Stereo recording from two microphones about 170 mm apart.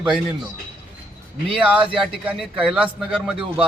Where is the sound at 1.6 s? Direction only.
5° right (ahead or behind).